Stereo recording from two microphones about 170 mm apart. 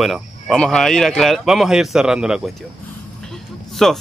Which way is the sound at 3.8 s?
Centre (ahead or behind).